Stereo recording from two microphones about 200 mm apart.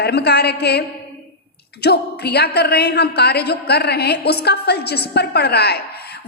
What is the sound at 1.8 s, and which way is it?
A woman's voice, 55° left (ahead or behind).